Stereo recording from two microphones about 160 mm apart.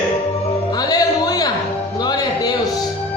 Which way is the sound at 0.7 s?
25° left (ahead or behind).